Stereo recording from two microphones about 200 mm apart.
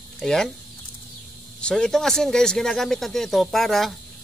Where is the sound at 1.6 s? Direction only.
5° left (ahead or behind).